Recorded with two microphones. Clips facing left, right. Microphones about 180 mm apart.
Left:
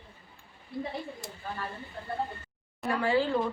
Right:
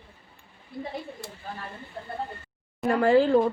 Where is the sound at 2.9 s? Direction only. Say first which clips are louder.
Right 7 dB; 45° right (ahead or behind).